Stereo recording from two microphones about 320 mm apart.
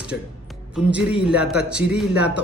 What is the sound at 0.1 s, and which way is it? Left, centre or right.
Speech, left.